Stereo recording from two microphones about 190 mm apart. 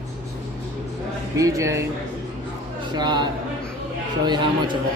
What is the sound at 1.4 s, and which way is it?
Speech, 15° right (ahead or behind).